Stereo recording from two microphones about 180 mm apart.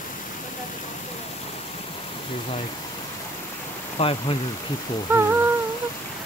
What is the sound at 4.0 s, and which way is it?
Speech, 30° left (ahead or behind).